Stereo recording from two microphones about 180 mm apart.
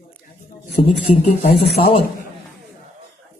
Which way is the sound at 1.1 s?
35° left (ahead or behind).